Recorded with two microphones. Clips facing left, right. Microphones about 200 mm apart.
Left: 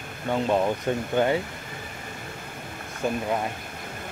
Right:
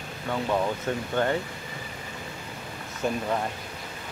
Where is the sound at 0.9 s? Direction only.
15° left (ahead or behind).